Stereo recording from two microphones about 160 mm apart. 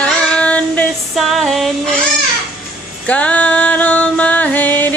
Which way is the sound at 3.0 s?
10° left (ahead or behind).